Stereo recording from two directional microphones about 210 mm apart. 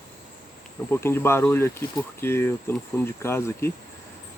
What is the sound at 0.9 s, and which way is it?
Speech, 10° left (ahead or behind).